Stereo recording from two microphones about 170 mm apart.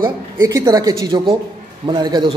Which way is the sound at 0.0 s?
20° right (ahead or behind).